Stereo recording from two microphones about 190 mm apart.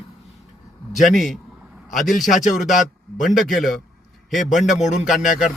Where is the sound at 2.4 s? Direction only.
40° left (ahead or behind).